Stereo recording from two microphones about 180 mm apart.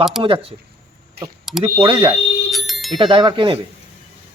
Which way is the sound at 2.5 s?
Centre (ahead or behind).